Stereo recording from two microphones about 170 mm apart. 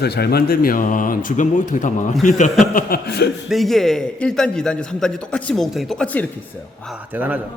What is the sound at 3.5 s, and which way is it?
A man's voice, centre (ahead or behind).